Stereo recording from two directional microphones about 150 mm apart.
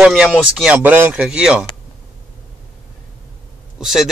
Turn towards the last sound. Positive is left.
turn(degrees=-5)  # may be behind; listen again after turning